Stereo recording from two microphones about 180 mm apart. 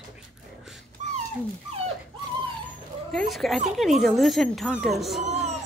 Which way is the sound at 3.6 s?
Centre (ahead or behind).